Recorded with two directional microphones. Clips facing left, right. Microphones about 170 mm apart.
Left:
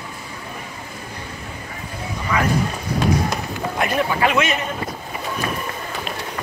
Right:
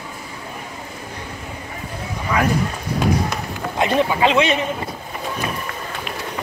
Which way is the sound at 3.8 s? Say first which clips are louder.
Right 3 dB; 20° right (ahead or behind).